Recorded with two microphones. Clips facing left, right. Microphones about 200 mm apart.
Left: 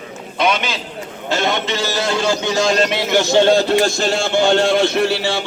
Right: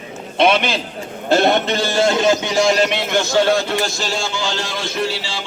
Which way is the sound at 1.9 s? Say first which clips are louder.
Right 5 dB; 25° right (ahead or behind).